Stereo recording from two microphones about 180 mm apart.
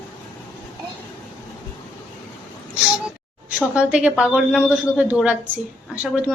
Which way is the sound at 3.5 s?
5° right (ahead or behind).